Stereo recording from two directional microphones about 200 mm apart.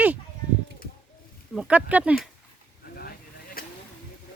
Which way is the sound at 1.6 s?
5° right (ahead or behind).